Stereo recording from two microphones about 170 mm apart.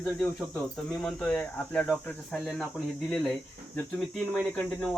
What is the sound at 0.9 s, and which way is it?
Speech, 5° left (ahead or behind).